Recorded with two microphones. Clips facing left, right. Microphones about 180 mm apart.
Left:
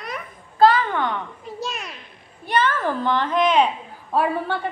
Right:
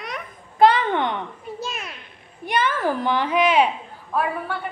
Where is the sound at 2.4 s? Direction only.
10° right (ahead or behind).